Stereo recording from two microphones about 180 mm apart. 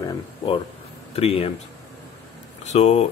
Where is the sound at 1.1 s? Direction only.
30° left (ahead or behind).